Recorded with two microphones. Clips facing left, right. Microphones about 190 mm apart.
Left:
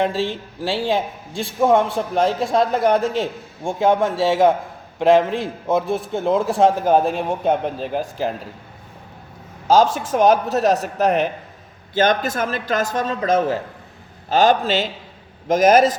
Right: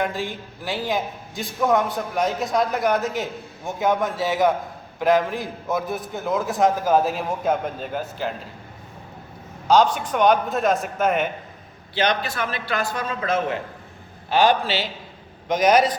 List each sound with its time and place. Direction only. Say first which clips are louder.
0.0 s a man's voice: left 5 dB; 30° left (ahead or behind)
9.6 s a man's voice: left 2 dB; 45° left (ahead or behind)